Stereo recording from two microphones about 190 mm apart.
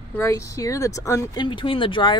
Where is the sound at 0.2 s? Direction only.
15° left (ahead or behind).